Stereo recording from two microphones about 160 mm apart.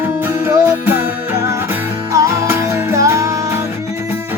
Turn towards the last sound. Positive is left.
turn(degrees=-20)  # may be behind; listen again after turning